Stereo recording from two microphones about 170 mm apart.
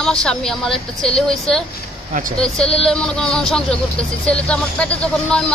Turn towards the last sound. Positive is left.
turn(degrees=5)  # may be behind; listen again after turning